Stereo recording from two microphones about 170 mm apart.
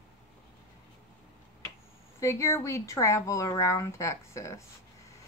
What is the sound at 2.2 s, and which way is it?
Speech, 15° left (ahead or behind).